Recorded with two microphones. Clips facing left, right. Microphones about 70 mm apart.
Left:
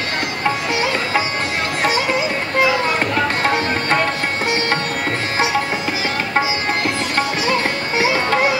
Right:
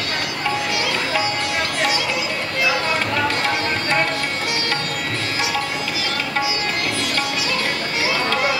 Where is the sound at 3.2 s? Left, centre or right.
Left.